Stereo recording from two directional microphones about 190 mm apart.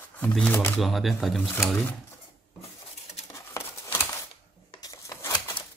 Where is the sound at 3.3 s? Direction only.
15° left (ahead or behind).